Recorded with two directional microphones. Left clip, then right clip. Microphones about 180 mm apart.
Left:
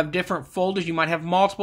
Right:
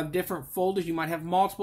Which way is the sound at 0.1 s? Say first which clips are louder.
Left 5 dB; 40° left (ahead or behind).